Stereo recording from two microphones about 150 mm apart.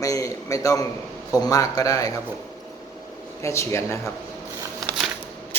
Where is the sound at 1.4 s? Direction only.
25° left (ahead or behind).